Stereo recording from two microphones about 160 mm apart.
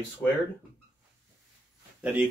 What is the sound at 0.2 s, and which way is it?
Speech, 10° left (ahead or behind).